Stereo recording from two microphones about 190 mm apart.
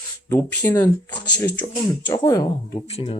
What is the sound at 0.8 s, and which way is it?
Speech, 20° left (ahead or behind).